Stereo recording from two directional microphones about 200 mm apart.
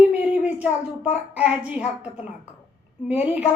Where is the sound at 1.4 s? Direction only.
5° right (ahead or behind).